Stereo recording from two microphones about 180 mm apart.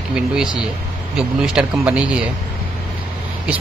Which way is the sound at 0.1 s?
5° right (ahead or behind).